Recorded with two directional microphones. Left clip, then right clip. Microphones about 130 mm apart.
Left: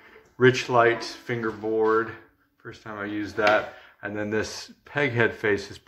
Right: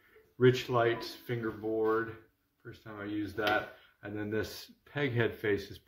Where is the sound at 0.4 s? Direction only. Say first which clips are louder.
Left 8 dB; 30° right (ahead or behind).